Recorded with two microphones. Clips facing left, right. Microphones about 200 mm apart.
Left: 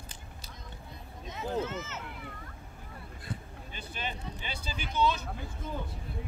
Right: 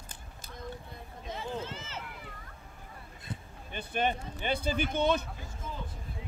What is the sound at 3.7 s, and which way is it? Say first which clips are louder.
Speech: right 9 dB; 55° right (ahead or behind).